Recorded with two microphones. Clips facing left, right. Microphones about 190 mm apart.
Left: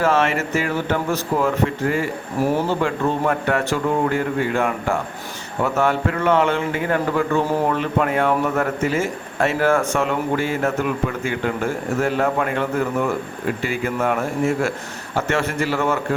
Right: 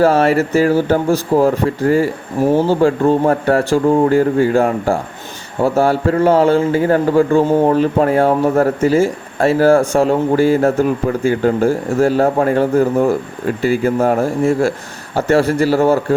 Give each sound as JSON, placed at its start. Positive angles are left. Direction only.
{"t": 0.0, "sound": "a man's voice", "side_deg": -35}